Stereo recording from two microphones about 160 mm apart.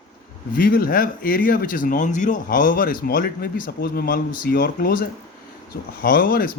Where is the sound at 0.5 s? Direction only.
60° left (ahead or behind).